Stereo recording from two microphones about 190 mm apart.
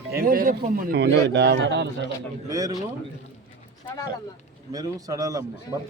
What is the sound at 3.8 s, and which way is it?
Speech, 20° left (ahead or behind).